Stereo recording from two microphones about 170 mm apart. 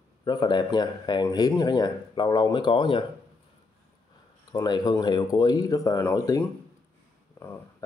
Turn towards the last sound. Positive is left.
turn(degrees=20)  # may be behind; listen again after turning